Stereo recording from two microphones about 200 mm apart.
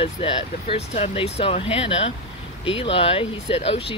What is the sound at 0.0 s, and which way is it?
Speech, 25° left (ahead or behind).